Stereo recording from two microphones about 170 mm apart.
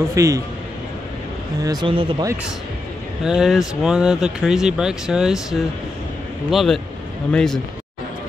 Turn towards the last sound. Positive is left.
turn(degrees=5)  # may be behind; listen again after turning